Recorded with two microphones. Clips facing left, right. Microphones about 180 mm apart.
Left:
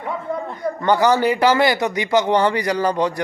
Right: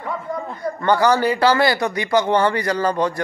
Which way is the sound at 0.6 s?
15° left (ahead or behind).